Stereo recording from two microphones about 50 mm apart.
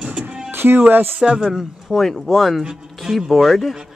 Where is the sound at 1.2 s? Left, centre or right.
Centre.